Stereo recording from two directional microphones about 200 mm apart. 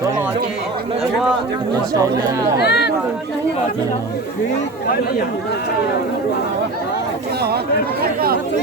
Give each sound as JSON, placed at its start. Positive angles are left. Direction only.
{"t": 2.0, "sound": "speech", "side_deg": -15}
{"t": 2.6, "sound": "speech", "side_deg": 55}